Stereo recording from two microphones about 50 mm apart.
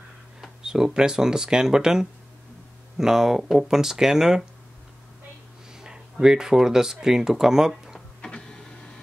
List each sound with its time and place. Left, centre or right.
0.6 s speech: centre
5.8 s speech: centre
8.2 s printer: centre